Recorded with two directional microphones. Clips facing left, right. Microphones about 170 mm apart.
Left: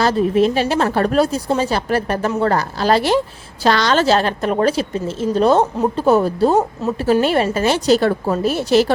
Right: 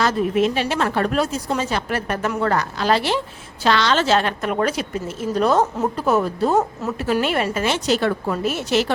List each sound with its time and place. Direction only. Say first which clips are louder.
0.0 s a woman's voice: left 4 dB; 35° left (ahead or behind)